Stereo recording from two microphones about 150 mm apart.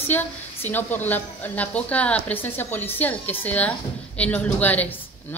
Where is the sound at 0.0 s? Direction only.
15° left (ahead or behind).